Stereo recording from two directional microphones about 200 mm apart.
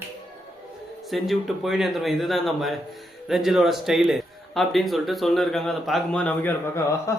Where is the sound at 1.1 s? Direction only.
Centre (ahead or behind).